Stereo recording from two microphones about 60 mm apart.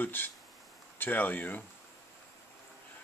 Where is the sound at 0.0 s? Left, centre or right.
Left.